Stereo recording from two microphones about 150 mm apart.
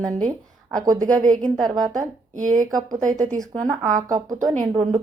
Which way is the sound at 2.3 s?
60° right (ahead or behind).